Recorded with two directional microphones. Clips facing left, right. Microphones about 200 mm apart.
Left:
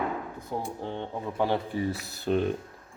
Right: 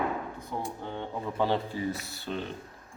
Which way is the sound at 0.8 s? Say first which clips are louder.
Left 3 dB; 30° left (ahead or behind).